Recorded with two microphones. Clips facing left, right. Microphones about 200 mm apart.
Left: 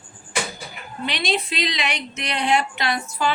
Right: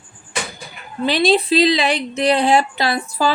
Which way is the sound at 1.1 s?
35° right (ahead or behind).